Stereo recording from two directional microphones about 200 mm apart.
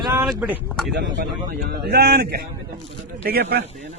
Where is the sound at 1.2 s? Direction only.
50° right (ahead or behind).